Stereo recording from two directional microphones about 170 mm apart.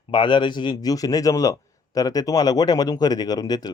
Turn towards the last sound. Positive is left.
turn(degrees=20)  # may be behind; listen again after turning